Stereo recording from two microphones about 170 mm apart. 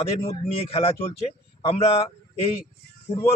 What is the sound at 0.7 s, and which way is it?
Speech, 35° left (ahead or behind).